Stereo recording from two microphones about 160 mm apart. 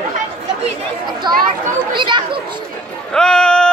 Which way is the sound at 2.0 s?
30° right (ahead or behind).